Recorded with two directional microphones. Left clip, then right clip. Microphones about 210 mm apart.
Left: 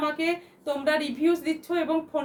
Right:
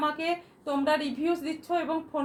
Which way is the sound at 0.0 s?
20° left (ahead or behind).